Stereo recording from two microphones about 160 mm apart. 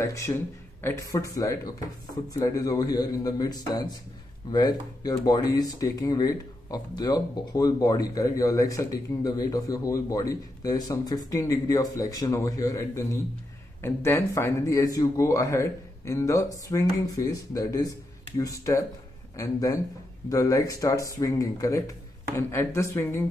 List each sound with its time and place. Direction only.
0.0 s a man's voice: 20° left (ahead or behind)